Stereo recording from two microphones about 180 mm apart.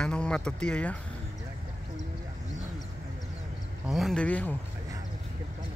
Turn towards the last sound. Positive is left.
turn(degrees=10)  # may be behind; listen again after turning